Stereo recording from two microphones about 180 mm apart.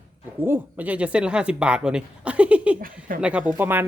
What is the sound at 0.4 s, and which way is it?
Speech, 10° right (ahead or behind).